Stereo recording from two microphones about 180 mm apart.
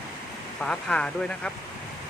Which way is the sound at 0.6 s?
5° left (ahead or behind).